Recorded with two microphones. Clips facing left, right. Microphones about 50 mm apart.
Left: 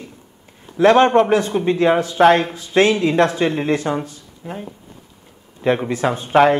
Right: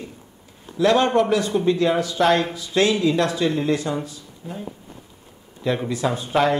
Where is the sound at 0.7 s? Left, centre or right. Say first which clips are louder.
Left 5 dB; left.